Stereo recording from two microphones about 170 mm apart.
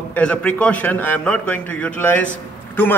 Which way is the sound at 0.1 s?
5° left (ahead or behind).